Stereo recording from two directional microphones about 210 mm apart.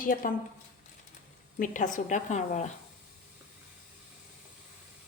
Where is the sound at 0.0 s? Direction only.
40° left (ahead or behind).